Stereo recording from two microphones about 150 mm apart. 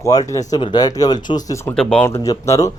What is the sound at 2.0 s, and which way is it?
Speech, 20° left (ahead or behind).